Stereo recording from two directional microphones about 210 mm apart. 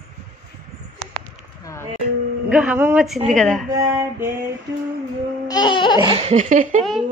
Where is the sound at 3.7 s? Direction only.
15° right (ahead or behind).